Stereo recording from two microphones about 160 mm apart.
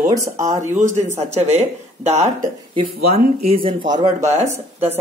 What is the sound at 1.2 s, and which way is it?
Speech, 45° right (ahead or behind).